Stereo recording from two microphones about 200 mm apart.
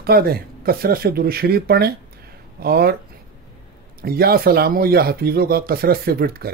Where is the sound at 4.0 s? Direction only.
50° right (ahead or behind).